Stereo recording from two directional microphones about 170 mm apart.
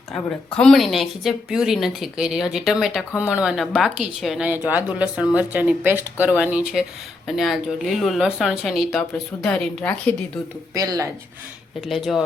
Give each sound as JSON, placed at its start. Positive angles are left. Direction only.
{"t": 0.1, "sound": "speech", "side_deg": 5}
{"t": 10.8, "sound": "speech", "side_deg": -20}
{"t": 11.9, "sound": "speech", "side_deg": 0}